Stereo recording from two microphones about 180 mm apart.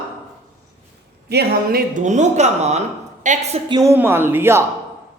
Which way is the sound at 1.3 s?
65° right (ahead or behind).